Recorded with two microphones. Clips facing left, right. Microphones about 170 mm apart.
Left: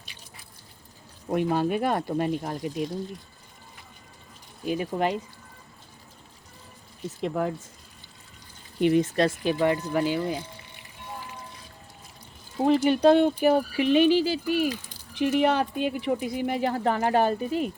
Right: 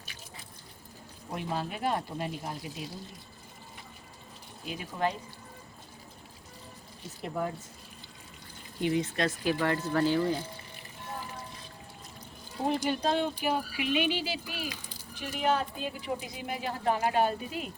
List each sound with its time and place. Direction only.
1.3 s speech: 60° left (ahead or behind)
4.6 s speech: 50° left (ahead or behind)
7.2 s speech: 90° left
8.8 s speech: 60° left (ahead or behind)
9.1 s speech: 25° left (ahead or behind)
12.6 s speech: 80° left; by 14.7 s 45° left (ahead or behind)
15.1 s speech: 75° left (ahead or behind); by 17.3 s 55° left (ahead or behind)